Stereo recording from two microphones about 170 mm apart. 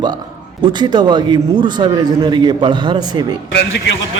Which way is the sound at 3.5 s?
90° left.